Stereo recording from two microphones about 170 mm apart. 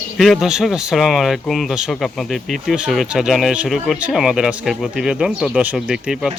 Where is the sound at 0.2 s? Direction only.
Centre (ahead or behind).